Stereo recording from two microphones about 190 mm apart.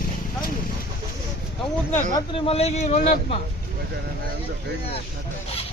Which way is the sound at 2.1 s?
30° left (ahead or behind).